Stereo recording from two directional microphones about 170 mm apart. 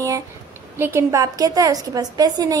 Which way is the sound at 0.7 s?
15° right (ahead or behind).